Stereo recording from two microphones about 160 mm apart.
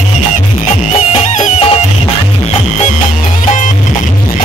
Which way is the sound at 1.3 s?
50° left (ahead or behind).